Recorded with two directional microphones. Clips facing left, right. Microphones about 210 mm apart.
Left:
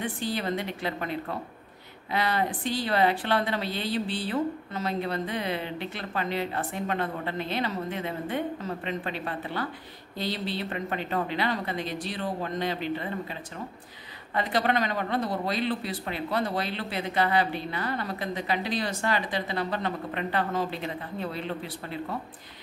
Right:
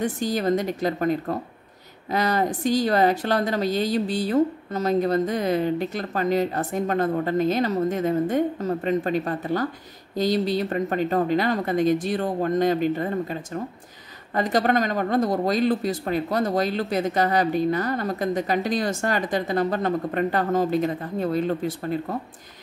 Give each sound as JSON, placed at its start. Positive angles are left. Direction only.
{"t": 0.0, "sound": "speech", "side_deg": -45}